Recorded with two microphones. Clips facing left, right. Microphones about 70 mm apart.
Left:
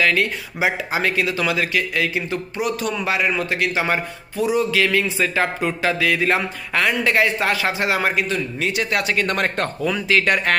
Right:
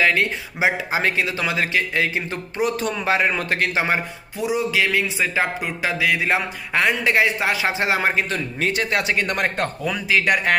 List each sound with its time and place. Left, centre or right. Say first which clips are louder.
0.0 s speech: even; right
3.7 s a man's voice: even; right
8.3 s a man's voice: left 1 dB; right; by 10.5 s centre